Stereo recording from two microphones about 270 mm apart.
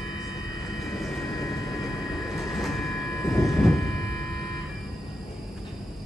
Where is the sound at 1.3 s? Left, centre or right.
Centre.